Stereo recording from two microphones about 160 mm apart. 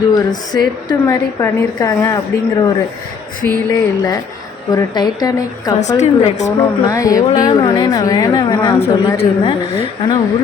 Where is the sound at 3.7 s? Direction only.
20° left (ahead or behind).